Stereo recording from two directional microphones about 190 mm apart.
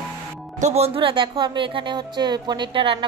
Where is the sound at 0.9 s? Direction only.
25° right (ahead or behind).